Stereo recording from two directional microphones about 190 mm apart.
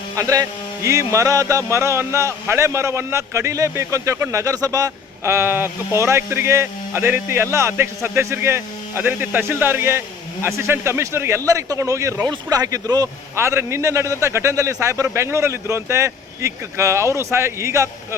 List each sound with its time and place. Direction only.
0.2 s speech: 15° right (ahead or behind)